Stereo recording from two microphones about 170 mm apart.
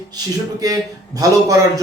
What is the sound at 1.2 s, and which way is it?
Speech, 20° right (ahead or behind).